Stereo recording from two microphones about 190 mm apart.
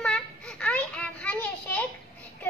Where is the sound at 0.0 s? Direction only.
5° left (ahead or behind).